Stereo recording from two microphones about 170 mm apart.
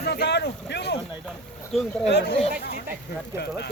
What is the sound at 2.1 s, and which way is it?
Speech, 80° left.